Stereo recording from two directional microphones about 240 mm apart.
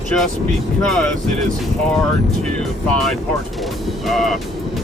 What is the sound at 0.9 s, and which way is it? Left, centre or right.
Speech, centre.